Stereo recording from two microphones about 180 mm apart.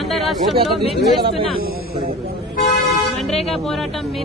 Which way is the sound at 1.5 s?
55° right (ahead or behind).